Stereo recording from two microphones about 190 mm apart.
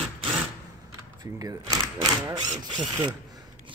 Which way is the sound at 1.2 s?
20° right (ahead or behind).